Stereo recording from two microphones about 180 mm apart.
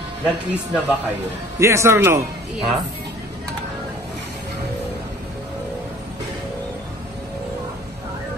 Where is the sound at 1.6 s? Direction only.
15° right (ahead or behind).